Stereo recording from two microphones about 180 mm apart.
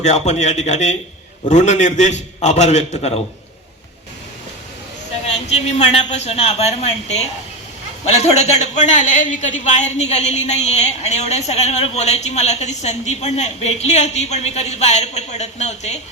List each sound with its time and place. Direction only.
0.0 s a man's voice: 40° left (ahead or behind)
5.2 s a man's voice: 35° left (ahead or behind)